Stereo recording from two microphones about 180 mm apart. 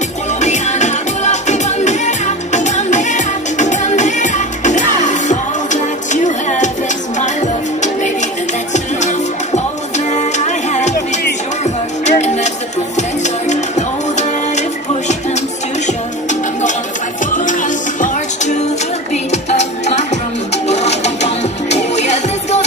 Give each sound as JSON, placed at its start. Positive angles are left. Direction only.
{"t": 0.4, "sound": "music", "side_deg": 40}
{"t": 7.8, "sound": "music", "side_deg": 40}
{"t": 17.3, "sound": "music", "side_deg": 45}